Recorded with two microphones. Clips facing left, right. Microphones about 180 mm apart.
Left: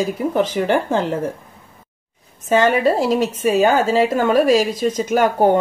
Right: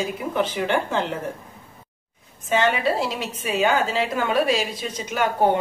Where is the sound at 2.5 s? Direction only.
45° left (ahead or behind).